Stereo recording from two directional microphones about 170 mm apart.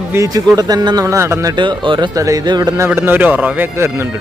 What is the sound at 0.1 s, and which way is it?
Speech, 20° right (ahead or behind).